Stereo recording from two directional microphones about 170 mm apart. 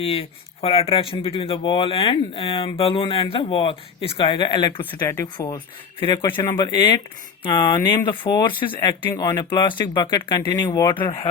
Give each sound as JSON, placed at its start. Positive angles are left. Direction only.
{"t": 0.0, "sound": "speech", "side_deg": 35}
{"t": 9.0, "sound": "speech", "side_deg": 10}
{"t": 9.2, "sound": "speech", "side_deg": 25}